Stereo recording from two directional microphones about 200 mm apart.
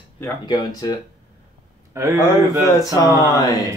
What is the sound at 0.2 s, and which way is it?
Speech, 20° left (ahead or behind).